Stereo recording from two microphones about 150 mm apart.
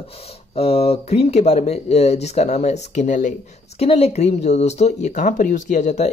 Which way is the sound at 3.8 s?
40° left (ahead or behind).